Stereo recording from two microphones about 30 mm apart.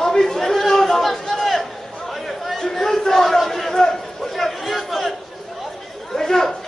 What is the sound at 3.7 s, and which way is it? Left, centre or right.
Chatter, centre.